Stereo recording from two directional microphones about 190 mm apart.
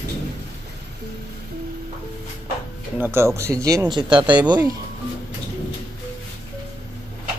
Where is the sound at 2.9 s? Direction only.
10° right (ahead or behind).